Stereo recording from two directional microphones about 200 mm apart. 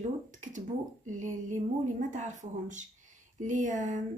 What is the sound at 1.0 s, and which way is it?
A woman's voice, 40° right (ahead or behind).